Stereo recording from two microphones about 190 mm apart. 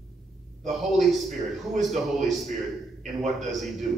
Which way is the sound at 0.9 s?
Centre (ahead or behind).